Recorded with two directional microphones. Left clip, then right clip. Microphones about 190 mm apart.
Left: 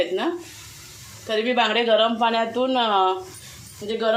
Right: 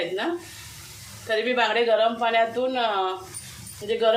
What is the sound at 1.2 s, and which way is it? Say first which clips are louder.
Speech: left 2 dB; 30° left (ahead or behind).